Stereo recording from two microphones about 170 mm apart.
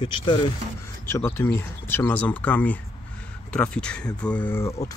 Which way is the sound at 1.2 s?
10° left (ahead or behind).